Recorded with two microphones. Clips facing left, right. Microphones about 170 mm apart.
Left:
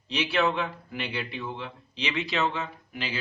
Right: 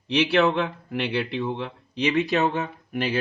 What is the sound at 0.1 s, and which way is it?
Speech, 65° right (ahead or behind).